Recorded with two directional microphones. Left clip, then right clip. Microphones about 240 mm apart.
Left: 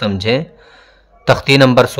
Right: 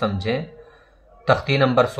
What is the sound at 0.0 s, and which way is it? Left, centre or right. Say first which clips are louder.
Speech: left 7 dB; left.